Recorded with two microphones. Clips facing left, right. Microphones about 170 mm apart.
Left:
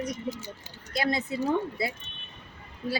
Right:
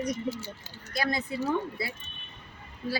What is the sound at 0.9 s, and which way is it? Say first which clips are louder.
Speech: left 2 dB; 25° left (ahead or behind).